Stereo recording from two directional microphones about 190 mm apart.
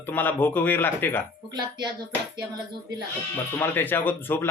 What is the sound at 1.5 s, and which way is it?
Speech, 25° right (ahead or behind).